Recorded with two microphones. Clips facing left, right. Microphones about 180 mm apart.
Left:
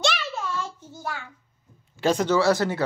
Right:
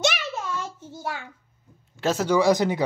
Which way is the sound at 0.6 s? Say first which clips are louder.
Even; 20° right (ahead or behind).